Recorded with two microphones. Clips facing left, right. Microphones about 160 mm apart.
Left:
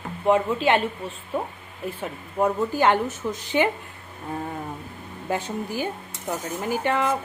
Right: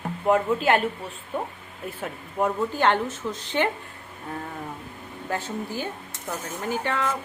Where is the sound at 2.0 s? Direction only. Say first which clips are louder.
Left 2 dB; 5° left (ahead or behind).